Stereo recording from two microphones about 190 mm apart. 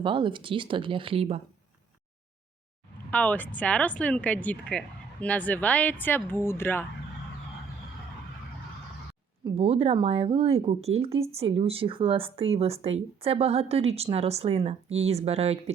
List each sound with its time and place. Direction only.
0.0 s speech: 25° right (ahead or behind)
3.1 s speech: 5° left (ahead or behind)
9.6 s speech: 30° right (ahead or behind)